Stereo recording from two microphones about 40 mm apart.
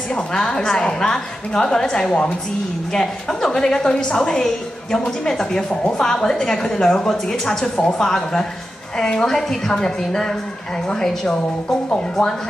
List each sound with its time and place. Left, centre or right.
0.1 s a woman's voice: centre